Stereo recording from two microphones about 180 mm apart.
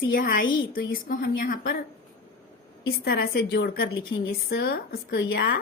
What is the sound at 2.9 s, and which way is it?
A woman's voice, 60° left (ahead or behind).